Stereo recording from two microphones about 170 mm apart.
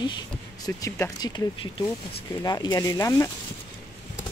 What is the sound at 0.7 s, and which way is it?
Speech, 15° left (ahead or behind).